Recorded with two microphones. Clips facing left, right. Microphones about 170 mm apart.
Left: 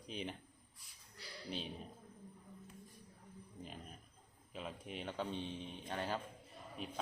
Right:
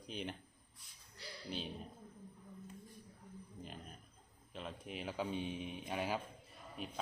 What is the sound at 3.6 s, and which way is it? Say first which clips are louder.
Wild animals: left 1 dB; centre (ahead or behind).